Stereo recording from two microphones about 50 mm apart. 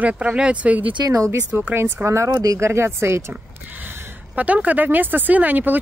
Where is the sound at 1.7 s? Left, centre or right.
Right.